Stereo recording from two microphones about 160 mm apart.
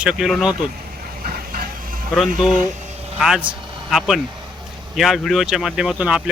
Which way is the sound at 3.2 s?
5° right (ahead or behind).